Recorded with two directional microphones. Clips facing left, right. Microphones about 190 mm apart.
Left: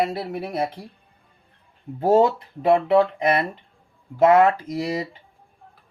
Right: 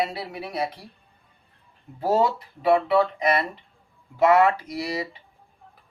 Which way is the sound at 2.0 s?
50° left (ahead or behind).